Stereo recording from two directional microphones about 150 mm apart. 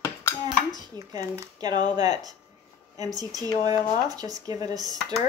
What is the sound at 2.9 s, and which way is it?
Speech, 25° right (ahead or behind).